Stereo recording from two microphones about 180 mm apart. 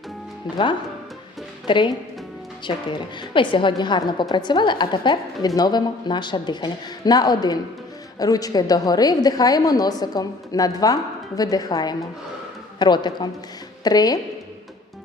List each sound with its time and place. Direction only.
0.5 s a woman's voice: 25° left (ahead or behind)